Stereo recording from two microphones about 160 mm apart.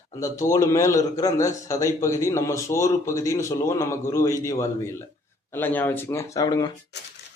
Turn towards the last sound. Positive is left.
turn(degrees=25)  # may be behind; listen again after turning